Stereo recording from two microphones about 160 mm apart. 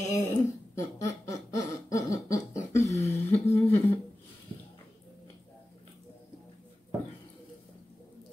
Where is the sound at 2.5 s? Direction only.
45° left (ahead or behind).